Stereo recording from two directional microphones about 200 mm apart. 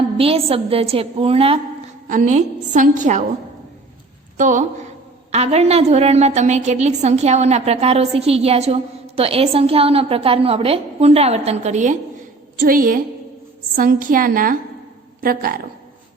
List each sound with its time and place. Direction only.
0.2 s a woman's voice: 30° right (ahead or behind)
2.0 s a woman's voice: 40° right (ahead or behind)
4.4 s a woman's voice: 40° right (ahead or behind)